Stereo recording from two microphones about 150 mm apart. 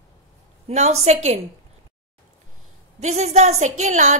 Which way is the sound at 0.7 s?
50° right (ahead or behind).